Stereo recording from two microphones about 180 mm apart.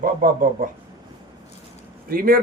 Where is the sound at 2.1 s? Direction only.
55° right (ahead or behind).